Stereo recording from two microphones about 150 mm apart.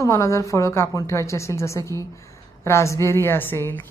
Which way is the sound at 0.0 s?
20° left (ahead or behind).